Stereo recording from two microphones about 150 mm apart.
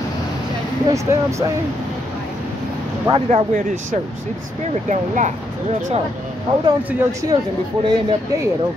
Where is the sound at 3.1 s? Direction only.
30° right (ahead or behind).